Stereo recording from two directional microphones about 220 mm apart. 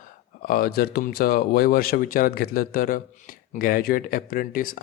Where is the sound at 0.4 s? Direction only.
40° left (ahead or behind).